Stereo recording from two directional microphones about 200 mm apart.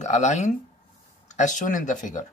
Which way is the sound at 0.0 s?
35° left (ahead or behind).